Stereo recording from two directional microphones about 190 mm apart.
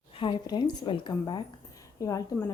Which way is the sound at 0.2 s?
25° left (ahead or behind).